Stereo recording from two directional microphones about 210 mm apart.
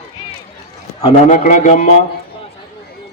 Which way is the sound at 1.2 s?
35° left (ahead or behind).